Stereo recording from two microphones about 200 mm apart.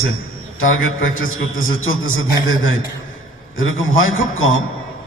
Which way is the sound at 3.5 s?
80° left.